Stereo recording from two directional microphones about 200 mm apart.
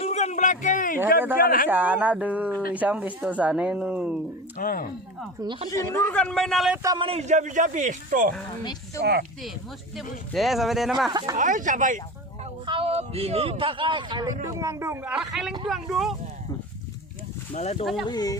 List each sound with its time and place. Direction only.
0.0 s a sound: 35° left (ahead or behind)
1.4 s speech: 45° left (ahead or behind)
1.6 s speech: 10° right (ahead or behind)
4.5 s speech: 45° left (ahead or behind)
5.4 s speech: 25° right (ahead or behind)
6.1 s a man's voice: 5° left (ahead or behind)
6.8 s a man's voice: 20° right (ahead or behind); by 8.3 s 40° right (ahead or behind)
9.0 s speech: 55° right (ahead or behind)
10.3 s a man's voice: centre (ahead or behind)
11.1 s speech: 20° right (ahead or behind)
11.3 s a man's voice: 40° right (ahead or behind)
12.6 s a man's voice: 25° right (ahead or behind); by 16.1 s centre (ahead or behind)
17.5 s speech: 35° left (ahead or behind)
18.1 s speech: 20° left (ahead or behind)